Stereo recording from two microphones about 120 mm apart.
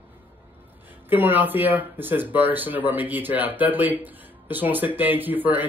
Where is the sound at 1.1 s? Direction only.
15° right (ahead or behind).